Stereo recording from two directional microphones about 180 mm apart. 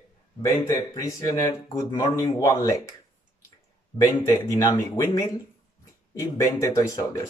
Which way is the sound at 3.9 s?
20° left (ahead or behind).